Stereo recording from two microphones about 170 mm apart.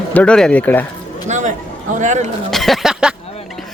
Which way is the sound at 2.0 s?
45° right (ahead or behind).